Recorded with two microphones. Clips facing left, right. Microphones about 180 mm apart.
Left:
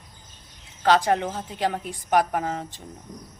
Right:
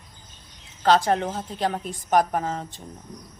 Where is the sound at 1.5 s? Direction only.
10° left (ahead or behind).